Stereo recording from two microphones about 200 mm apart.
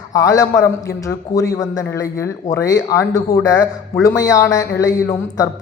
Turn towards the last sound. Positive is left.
turn(degrees=15)  # may be behind; listen again after turning